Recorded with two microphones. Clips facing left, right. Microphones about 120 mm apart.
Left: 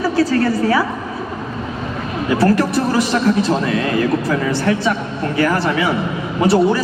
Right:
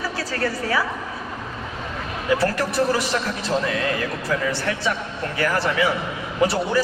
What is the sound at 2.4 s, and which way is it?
A man's voice, 20° left (ahead or behind).